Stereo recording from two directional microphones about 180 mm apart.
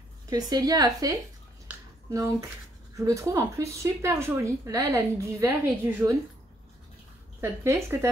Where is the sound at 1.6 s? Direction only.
15° right (ahead or behind).